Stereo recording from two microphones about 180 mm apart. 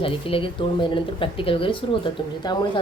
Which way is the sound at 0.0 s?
30° left (ahead or behind).